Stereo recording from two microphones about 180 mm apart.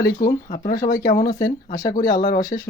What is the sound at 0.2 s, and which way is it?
Speech, 50° left (ahead or behind).